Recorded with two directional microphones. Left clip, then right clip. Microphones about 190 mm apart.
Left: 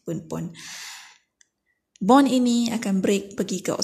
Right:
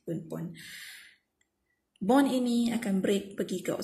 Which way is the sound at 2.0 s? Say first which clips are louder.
Left 8 dB; 35° left (ahead or behind).